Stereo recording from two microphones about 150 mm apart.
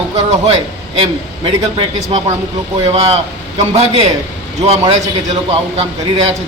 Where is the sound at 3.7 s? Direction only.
45° right (ahead or behind).